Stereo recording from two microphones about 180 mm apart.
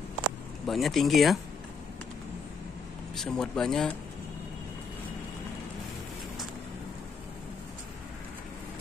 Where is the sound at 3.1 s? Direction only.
5° left (ahead or behind).